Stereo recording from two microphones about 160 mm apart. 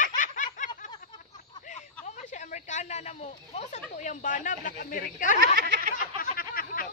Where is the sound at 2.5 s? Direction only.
45° left (ahead or behind).